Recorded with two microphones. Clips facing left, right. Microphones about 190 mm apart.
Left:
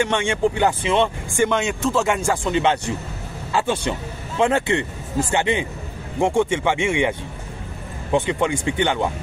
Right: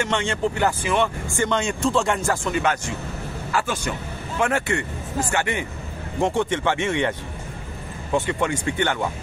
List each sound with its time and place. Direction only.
0.0 s speech: 10° left (ahead or behind)
1.3 s speech: 10° left (ahead or behind)
2.5 s speech: 25° left (ahead or behind)